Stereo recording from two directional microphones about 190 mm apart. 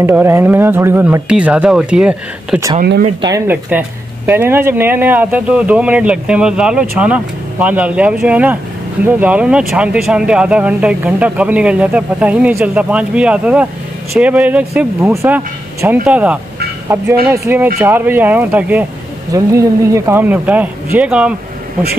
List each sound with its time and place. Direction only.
0.0 s speech: 10° right (ahead or behind)
2.8 s speech: 50° right (ahead or behind)
3.2 s speech: 15° right (ahead or behind)